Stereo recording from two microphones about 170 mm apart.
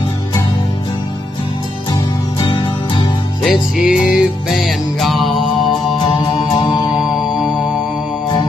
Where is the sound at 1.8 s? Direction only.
25° left (ahead or behind).